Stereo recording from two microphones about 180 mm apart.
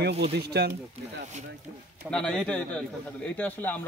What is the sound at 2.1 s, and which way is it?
A man's voice, 5° left (ahead or behind).